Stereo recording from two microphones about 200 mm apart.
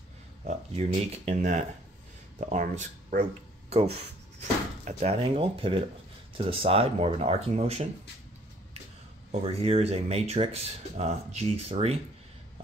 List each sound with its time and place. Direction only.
0.5 s speech: 35° right (ahead or behind)
9.5 s speech: 30° right (ahead or behind)